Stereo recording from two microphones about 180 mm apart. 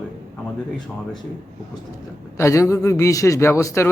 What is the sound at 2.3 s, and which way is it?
A man's voice, 15° left (ahead or behind).